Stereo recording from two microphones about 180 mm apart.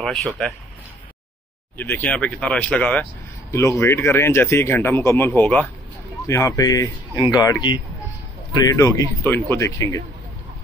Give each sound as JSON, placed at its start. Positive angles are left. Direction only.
{"t": 0.0, "sound": "speech", "side_deg": 0}
{"t": 1.8, "sound": "speech", "side_deg": 10}